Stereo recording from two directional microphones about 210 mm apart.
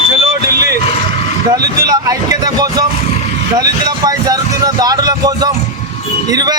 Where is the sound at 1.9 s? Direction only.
15° right (ahead or behind).